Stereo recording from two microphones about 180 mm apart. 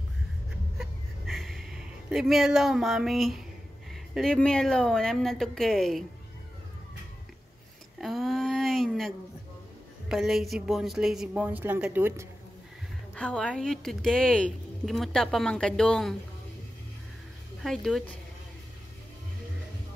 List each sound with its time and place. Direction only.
0.7 s a sound: centre (ahead or behind)
3.9 s a woman's voice: centre (ahead or behind)
8.0 s a sound: centre (ahead or behind)
10.0 s a woman's voice: centre (ahead or behind)
13.1 s a woman's voice: 5° left (ahead or behind)
17.6 s a woman's voice: centre (ahead or behind)